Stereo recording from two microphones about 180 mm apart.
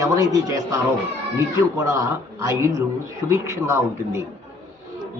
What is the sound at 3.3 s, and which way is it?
Speech, 15° right (ahead or behind).